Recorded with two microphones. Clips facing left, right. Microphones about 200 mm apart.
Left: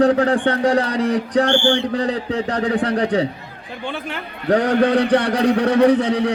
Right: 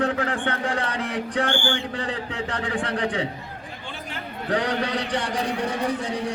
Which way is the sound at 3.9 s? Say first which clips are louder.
Left 9 dB; 65° left (ahead or behind).